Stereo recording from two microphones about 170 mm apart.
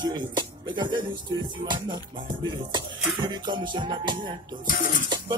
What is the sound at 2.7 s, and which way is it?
Music, 25° right (ahead or behind).